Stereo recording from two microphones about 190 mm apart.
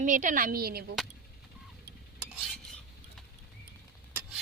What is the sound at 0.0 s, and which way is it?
Speech, 45° right (ahead or behind).